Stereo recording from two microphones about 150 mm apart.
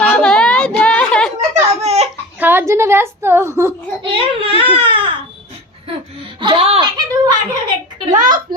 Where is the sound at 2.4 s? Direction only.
15° right (ahead or behind).